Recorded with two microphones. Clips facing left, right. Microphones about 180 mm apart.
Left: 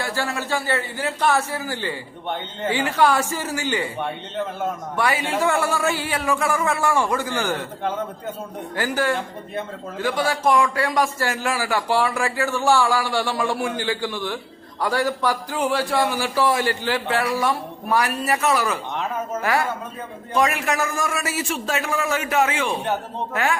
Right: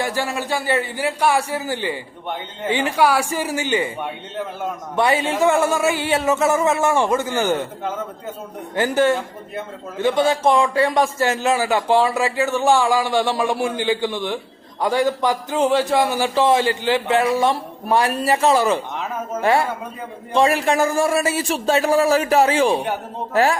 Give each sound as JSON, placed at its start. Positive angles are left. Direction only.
{"t": 0.0, "sound": "a man's voice", "side_deg": -15}
{"t": 4.9, "sound": "a man's voice", "side_deg": -25}
{"t": 8.7, "sound": "a man's voice", "side_deg": -25}
{"t": 18.9, "sound": "speech", "side_deg": -5}
{"t": 19.4, "sound": "a man's voice", "side_deg": -30}